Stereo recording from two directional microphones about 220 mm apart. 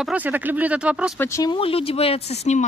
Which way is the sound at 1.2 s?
15° left (ahead or behind).